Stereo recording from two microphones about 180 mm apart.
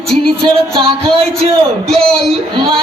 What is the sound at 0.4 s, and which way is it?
Speech, 30° right (ahead or behind).